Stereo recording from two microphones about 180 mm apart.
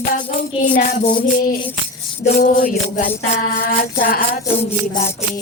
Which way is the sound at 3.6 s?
55° left (ahead or behind).